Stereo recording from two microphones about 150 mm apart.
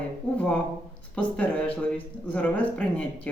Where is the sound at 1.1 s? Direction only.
10° left (ahead or behind).